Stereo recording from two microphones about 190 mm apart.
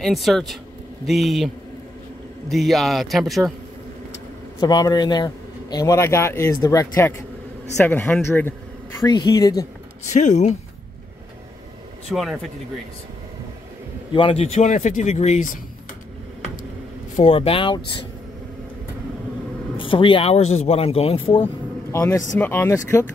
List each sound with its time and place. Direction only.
0.0 s speech: centre (ahead or behind)
2.5 s speech: centre (ahead or behind)
4.6 s a man's voice: 20° left (ahead or behind)
9.0 s a woman's voice: 20° left (ahead or behind)
10.1 s speech: 40° left (ahead or behind)
12.1 s speech: centre (ahead or behind)
14.1 s speech: 30° left (ahead or behind)
17.2 s a woman's voice: 30° left (ahead or behind)
19.8 s speech: 25° left (ahead or behind)
21.9 s a man's voice: 15° left (ahead or behind)